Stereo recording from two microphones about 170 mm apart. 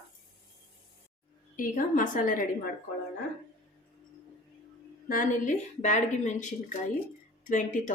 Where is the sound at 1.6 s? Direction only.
50° left (ahead or behind).